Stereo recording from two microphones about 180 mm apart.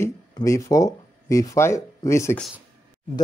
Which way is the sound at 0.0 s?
15° left (ahead or behind).